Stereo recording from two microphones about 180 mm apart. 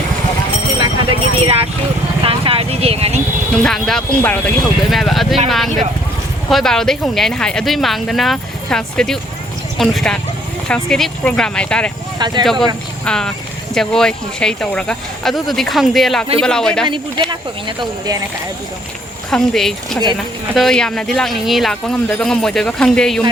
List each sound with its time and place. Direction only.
0.8 s clip-clop: 30° right (ahead or behind)
2.2 s vehicle: 30° right (ahead or behind)
3.6 s speech: centre (ahead or behind)
12.2 s speech: 25° right (ahead or behind)
13.1 s speech: 5° left (ahead or behind)
16.8 s speech: 25° right (ahead or behind)
19.3 s speech: centre (ahead or behind)